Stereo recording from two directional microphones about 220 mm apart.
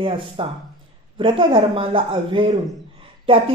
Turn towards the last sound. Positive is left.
turn(degrees=-25)  # may be behind; listen again after turning